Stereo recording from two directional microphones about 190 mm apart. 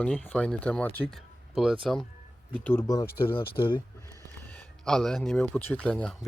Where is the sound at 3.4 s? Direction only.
25° left (ahead or behind).